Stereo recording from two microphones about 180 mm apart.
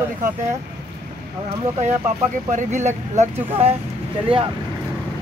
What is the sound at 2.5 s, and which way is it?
Speech, 45° right (ahead or behind).